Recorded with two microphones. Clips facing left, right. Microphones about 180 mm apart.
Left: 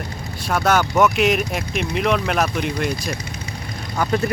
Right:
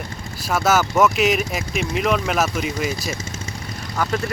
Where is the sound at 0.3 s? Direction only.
Centre (ahead or behind).